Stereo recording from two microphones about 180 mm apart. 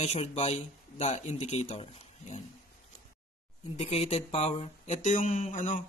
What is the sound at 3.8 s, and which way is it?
Speech, 35° left (ahead or behind).